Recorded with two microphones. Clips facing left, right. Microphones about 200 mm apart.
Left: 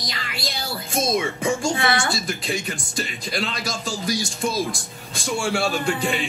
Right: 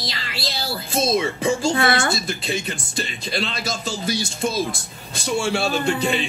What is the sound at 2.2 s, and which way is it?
Speech, 25° right (ahead or behind).